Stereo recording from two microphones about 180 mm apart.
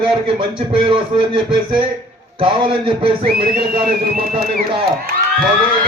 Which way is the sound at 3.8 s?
55° right (ahead or behind).